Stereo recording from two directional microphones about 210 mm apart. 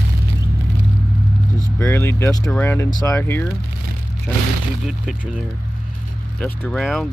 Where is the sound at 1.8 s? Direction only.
10° left (ahead or behind).